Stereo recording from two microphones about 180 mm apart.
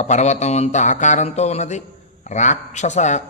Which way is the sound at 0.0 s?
40° left (ahead or behind).